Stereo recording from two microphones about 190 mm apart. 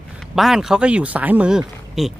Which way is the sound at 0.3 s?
Centre (ahead or behind).